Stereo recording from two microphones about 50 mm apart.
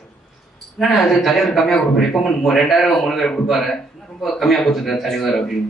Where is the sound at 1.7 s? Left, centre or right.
Centre.